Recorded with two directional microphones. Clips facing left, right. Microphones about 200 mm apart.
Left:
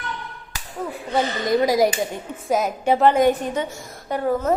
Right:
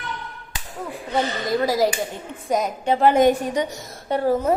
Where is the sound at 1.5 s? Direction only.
15° left (ahead or behind).